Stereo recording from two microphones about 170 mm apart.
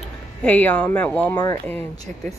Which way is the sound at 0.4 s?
10° left (ahead or behind).